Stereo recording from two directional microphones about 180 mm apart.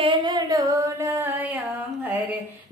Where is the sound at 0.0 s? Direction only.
25° right (ahead or behind).